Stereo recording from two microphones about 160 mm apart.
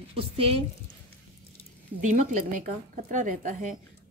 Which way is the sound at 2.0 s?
55° right (ahead or behind).